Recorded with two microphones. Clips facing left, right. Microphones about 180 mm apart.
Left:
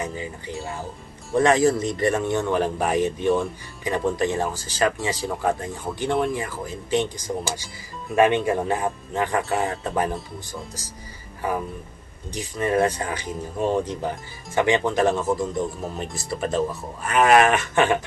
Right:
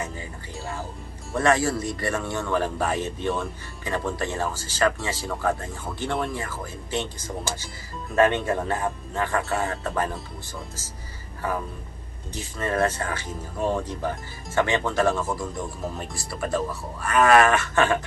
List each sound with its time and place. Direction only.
0.0 s speech: 20° left (ahead or behind)
11.4 s speech: 15° left (ahead or behind)